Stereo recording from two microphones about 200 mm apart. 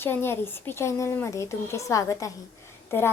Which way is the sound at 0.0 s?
10° left (ahead or behind).